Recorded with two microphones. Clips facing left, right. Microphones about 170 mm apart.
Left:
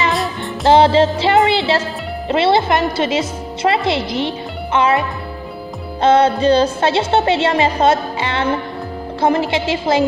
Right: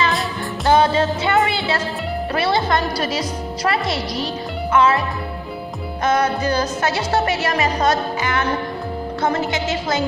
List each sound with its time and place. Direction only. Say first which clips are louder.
0.7 s music: left 5 dB; 30° left (ahead or behind)
6.0 s music: left 7 dB; 30° left (ahead or behind)